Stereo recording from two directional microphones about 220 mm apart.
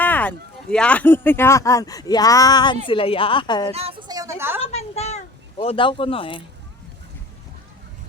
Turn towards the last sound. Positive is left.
turn(degrees=25)  # may be behind; listen again after turning